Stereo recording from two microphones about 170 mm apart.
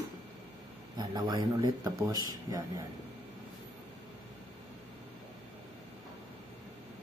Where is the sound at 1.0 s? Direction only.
25° right (ahead or behind).